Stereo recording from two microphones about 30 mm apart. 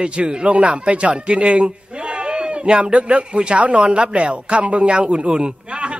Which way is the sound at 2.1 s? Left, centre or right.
Right.